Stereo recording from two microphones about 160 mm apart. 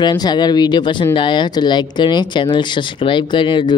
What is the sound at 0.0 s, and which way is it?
Speech, 25° left (ahead or behind).